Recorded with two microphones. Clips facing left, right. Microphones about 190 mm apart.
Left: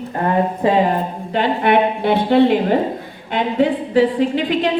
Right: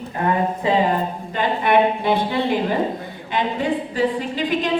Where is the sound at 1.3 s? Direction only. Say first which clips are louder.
Left 3 dB; 65° left (ahead or behind).